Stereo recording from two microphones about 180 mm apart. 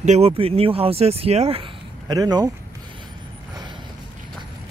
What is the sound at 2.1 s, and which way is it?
Speech, 20° right (ahead or behind).